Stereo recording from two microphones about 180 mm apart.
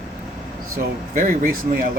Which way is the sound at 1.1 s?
45° right (ahead or behind).